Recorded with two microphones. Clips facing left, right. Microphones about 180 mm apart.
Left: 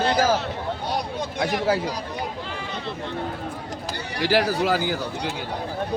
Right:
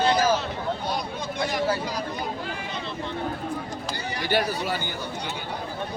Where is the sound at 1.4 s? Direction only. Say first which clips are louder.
Left 3 dB; 65° left (ahead or behind).